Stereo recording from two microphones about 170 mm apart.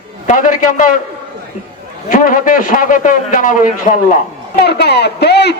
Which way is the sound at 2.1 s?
50° left (ahead or behind).